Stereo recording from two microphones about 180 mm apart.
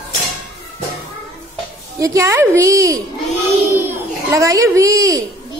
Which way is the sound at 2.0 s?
15° right (ahead or behind).